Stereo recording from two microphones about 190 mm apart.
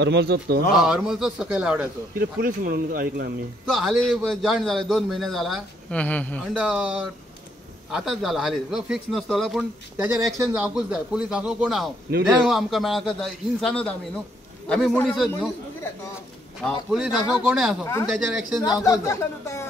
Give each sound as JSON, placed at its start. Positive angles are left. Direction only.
{"t": 0.0, "sound": "speech", "side_deg": -65}
{"t": 0.7, "sound": "a man's voice", "side_deg": 0}
{"t": 2.1, "sound": "speech", "side_deg": -50}
{"t": 3.6, "sound": "a man's voice", "side_deg": 0}
{"t": 6.5, "sound": "a man's voice", "side_deg": -5}
{"t": 16.9, "sound": "a man's voice", "side_deg": -5}
{"t": 18.6, "sound": "speech", "side_deg": 20}